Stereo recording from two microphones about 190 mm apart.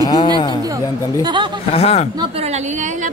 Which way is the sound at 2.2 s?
30° right (ahead or behind).